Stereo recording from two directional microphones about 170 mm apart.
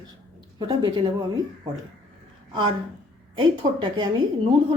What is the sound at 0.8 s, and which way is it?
Speech, 25° right (ahead or behind).